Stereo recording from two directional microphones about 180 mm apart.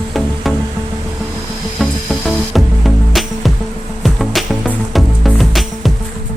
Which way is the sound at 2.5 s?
Centre (ahead or behind).